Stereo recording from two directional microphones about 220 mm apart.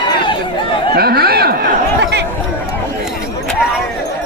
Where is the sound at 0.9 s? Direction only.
45° right (ahead or behind).